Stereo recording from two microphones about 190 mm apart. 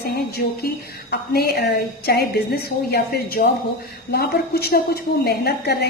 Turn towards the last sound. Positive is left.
turn(degrees=55)  # may be behind; listen again after turning